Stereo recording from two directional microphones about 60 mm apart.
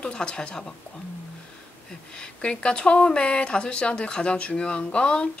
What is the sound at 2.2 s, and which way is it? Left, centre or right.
Speech, centre.